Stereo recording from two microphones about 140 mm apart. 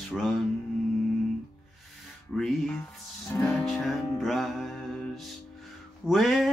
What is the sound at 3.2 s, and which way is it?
Music, 15° left (ahead or behind).